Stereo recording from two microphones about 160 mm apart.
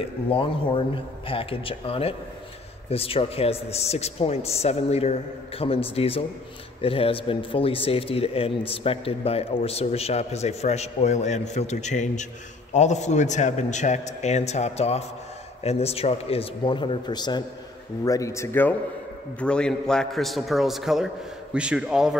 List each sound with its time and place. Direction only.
0.3 s a man's voice: 30° left (ahead or behind); by 22.1 s 5° right (ahead or behind)